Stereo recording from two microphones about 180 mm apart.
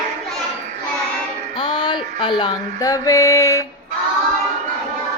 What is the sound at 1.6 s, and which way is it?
Female singing, 30° left (ahead or behind).